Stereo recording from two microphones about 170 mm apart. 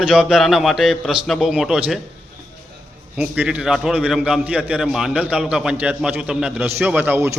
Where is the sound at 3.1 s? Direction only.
5° right (ahead or behind).